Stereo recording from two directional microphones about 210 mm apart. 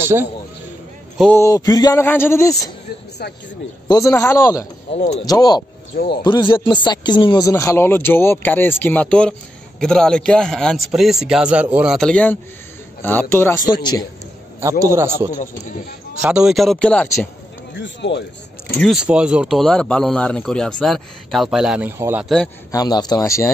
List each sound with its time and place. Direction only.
0.0 s a man's voice: 10° right (ahead or behind)
1.3 s speech: 15° left (ahead or behind)
3.9 s speech: 15° left (ahead or behind)
4.9 s speech: 35° left (ahead or behind)
5.2 s speech: 20° left (ahead or behind)
5.9 s speech: 50° left (ahead or behind)
6.2 s speech: 25° left (ahead or behind)
14.6 s a man's voice: 15° right (ahead or behind)
16.2 s speech: 5° right (ahead or behind)
17.7 s speech: 55° left (ahead or behind)
18.8 s speech: centre (ahead or behind)
22.2 s speech: centre (ahead or behind)
22.7 s speech: 20° left (ahead or behind)